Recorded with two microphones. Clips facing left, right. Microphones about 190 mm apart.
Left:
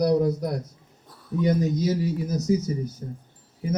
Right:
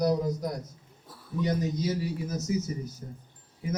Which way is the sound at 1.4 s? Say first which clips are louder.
Left 6 dB; 50° left (ahead or behind).